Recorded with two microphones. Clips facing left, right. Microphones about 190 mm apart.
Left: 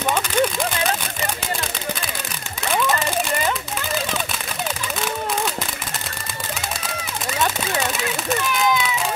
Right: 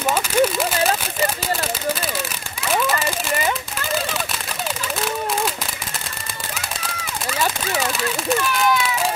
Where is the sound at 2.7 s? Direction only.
Centre (ahead or behind).